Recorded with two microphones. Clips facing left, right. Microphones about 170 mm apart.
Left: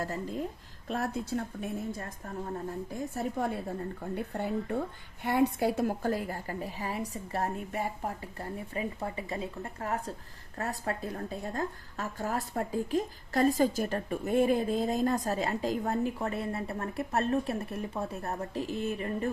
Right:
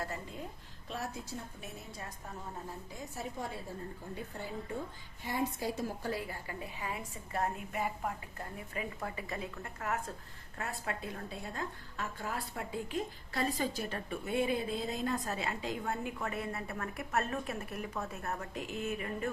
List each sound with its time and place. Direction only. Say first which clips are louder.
0.0 s a woman's voice: left 6 dB; 40° left (ahead or behind)
0.9 s a woman's voice: left 8 dB; 50° left (ahead or behind); by 19.3 s 35° left (ahead or behind)